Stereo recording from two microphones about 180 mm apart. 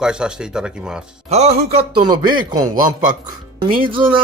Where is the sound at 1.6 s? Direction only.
25° right (ahead or behind).